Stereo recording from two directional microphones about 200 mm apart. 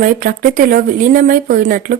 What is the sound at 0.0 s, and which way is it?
Speech, 45° right (ahead or behind).